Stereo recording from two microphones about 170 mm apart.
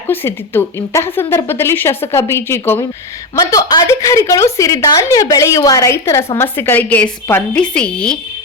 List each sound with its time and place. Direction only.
0.1 s a woman's voice: 10° left (ahead or behind)